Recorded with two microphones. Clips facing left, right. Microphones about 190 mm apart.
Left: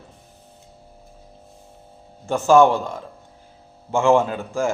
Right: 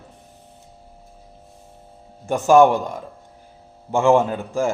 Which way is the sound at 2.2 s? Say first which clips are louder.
Right 1 dB; 15° right (ahead or behind).